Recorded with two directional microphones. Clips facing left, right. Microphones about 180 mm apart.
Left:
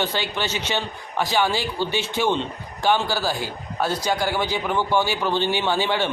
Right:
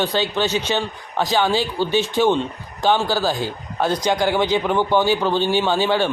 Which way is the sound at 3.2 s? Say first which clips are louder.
Right 4 dB; 10° left (ahead or behind).